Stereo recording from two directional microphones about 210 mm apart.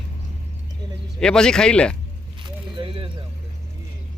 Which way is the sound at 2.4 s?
25° right (ahead or behind).